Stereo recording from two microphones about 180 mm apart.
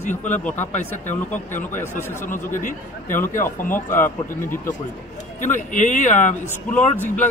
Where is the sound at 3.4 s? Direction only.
10° left (ahead or behind).